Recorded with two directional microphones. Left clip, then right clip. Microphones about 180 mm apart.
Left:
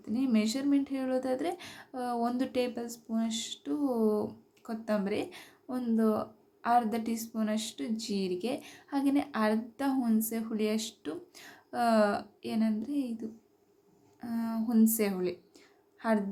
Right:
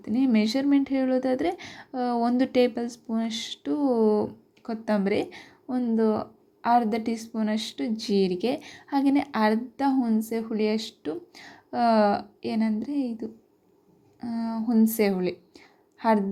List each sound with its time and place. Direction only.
0.0 s a woman's voice: 30° right (ahead or behind)